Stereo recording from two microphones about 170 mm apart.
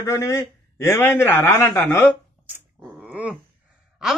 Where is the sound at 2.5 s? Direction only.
10° right (ahead or behind).